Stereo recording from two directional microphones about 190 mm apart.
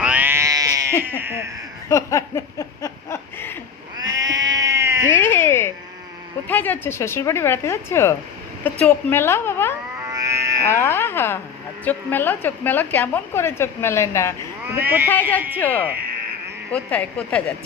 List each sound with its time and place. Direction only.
0.0 s cat: 10° right (ahead or behind)
1.9 s a sound: 15° left (ahead or behind)
3.9 s sheep: 20° right (ahead or behind)
5.0 s cat: 10° left (ahead or behind)
6.5 s a woman's voice: 10° left (ahead or behind)
10.1 s cat: 15° right (ahead or behind)
10.7 s a woman's voice: 15° left (ahead or behind)
14.8 s a man's voice: 10° right (ahead or behind)
15.5 s a woman's voice: 10° left (ahead or behind)